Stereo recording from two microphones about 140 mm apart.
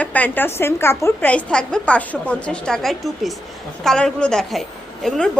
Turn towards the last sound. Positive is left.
turn(degrees=5)  # may be behind; listen again after turning